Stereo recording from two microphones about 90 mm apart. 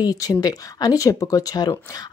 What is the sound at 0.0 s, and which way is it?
Speech, 45° left (ahead or behind).